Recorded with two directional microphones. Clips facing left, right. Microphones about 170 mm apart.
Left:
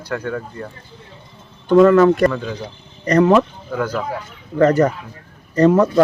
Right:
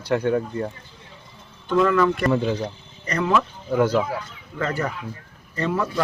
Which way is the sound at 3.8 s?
25° right (ahead or behind).